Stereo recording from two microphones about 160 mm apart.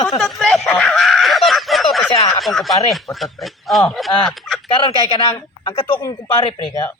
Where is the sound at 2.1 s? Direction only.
40° left (ahead or behind).